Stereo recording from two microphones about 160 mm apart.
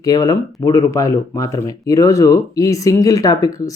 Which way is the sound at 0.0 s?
25° left (ahead or behind).